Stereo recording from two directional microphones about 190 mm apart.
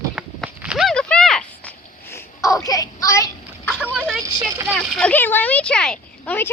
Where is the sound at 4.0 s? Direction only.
Centre (ahead or behind).